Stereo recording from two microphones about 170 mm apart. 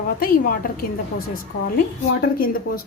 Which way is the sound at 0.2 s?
55° left (ahead or behind).